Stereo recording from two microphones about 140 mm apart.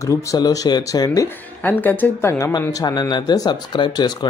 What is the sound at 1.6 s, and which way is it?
Speech, 15° left (ahead or behind).